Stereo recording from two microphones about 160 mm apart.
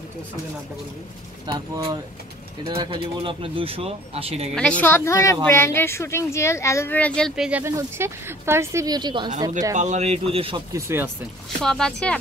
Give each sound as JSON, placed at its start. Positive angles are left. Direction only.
{"t": 1.5, "sound": "speech", "side_deg": -30}
{"t": 4.6, "sound": "speech", "side_deg": 5}
{"t": 7.6, "sound": "speech", "side_deg": -15}
{"t": 9.8, "sound": "speech", "side_deg": -45}
{"t": 10.7, "sound": "speech", "side_deg": -15}
{"t": 11.6, "sound": "speech", "side_deg": 5}